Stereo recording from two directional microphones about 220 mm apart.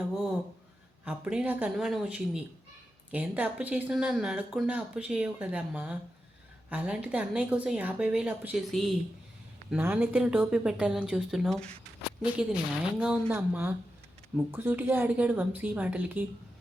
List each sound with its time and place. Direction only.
1.0 s a woman's voice: 5° right (ahead or behind)